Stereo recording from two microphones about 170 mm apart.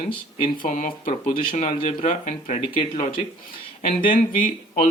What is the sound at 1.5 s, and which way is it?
Speech, 35° left (ahead or behind).